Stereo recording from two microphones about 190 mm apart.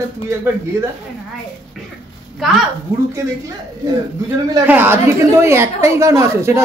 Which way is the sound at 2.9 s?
15° right (ahead or behind).